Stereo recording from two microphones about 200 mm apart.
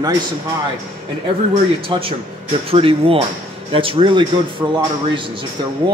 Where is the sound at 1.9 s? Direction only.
25° right (ahead or behind).